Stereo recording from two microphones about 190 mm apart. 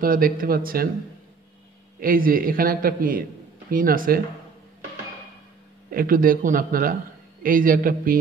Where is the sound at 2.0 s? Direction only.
50° right (ahead or behind).